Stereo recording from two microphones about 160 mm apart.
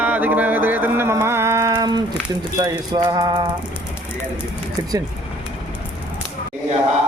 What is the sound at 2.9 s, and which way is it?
Mantra, 25° right (ahead or behind).